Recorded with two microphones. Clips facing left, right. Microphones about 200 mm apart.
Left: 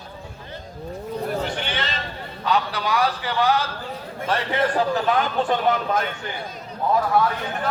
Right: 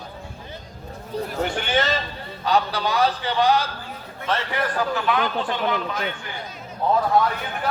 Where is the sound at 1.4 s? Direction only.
50° right (ahead or behind).